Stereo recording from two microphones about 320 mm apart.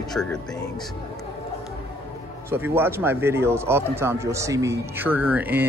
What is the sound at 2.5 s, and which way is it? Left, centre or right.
A man's voice, centre.